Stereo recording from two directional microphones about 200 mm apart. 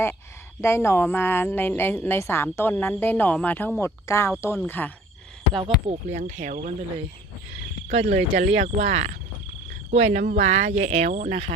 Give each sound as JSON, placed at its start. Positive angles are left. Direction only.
{"t": 0.6, "sound": "a woman's voice", "side_deg": 10}
{"t": 5.5, "sound": "speech", "side_deg": -30}
{"t": 7.9, "sound": "speech", "side_deg": -35}